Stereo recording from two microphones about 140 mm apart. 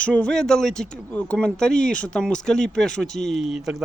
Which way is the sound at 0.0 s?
10° left (ahead or behind).